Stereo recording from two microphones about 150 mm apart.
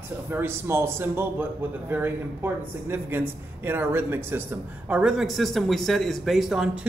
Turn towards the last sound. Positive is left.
turn(degrees=-5)  # may be behind; listen again after turning